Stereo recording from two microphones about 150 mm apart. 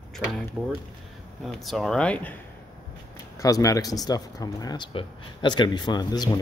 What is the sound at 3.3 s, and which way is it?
Speech, 25° left (ahead or behind).